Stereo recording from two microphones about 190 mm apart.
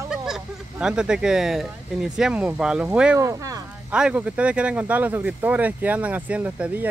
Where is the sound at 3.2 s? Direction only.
15° right (ahead or behind).